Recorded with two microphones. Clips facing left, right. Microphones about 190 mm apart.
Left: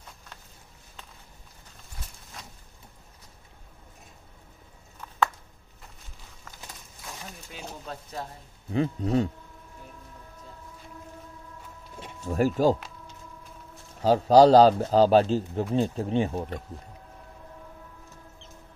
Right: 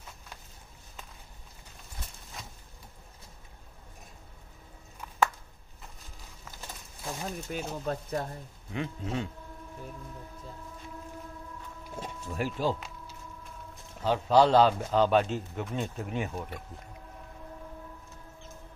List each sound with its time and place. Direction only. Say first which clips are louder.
7.5 s speech: right 5 dB; 50° right (ahead or behind)
8.7 s speech: left 9 dB; 35° left (ahead or behind)
12.3 s speech: left 8 dB; 45° left (ahead or behind)
14.0 s speech: left 6 dB; 40° left (ahead or behind)